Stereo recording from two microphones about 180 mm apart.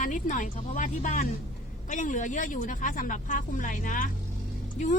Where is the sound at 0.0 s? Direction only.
45° left (ahead or behind).